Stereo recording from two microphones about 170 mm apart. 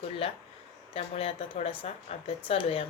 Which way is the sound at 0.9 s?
35° left (ahead or behind).